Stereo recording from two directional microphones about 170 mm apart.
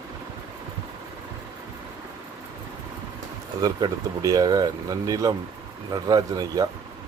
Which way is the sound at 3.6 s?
20° right (ahead or behind).